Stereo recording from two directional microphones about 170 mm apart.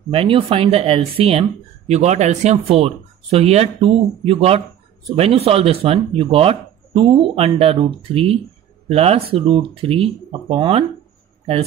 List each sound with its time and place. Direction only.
0.1 s speech: 30° right (ahead or behind)